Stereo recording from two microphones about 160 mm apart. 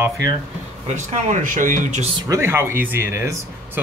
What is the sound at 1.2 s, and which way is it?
Speech, 55° right (ahead or behind).